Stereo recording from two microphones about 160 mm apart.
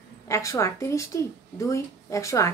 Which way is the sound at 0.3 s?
20° left (ahead or behind).